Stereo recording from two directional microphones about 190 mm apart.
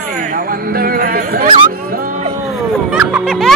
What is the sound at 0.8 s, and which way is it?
Music, 50° right (ahead or behind).